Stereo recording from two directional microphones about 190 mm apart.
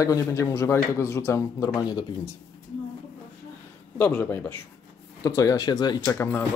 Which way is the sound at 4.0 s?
5° left (ahead or behind).